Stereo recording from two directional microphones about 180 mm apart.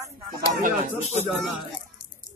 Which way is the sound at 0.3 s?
50° right (ahead or behind).